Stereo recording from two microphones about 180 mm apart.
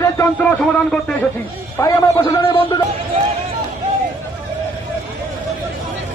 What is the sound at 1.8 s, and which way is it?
A man's voice, 20° left (ahead or behind).